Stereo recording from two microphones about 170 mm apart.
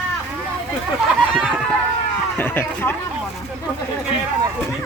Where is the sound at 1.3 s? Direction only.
5° right (ahead or behind).